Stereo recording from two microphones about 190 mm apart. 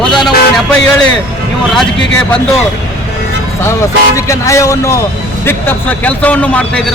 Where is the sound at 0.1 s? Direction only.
Centre (ahead or behind).